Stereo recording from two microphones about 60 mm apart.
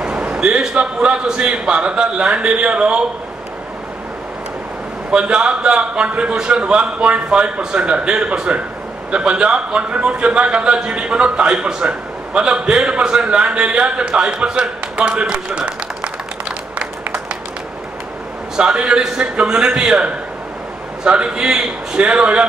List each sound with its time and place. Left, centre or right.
0.0 s a sound: centre
1.2 s a man's voice: centre
5.1 s a man's voice: centre
18.6 s a man's voice: centre